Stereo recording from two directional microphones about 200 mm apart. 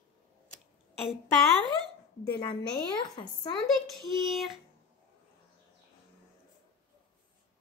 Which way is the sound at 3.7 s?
Centre (ahead or behind).